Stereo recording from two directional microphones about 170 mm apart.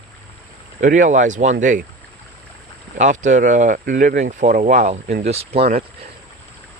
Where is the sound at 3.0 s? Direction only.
45° right (ahead or behind).